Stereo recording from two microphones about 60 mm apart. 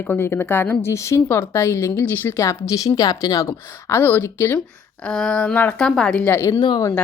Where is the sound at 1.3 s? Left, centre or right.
Left.